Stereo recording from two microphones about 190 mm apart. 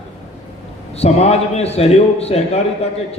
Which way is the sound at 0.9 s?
35° left (ahead or behind).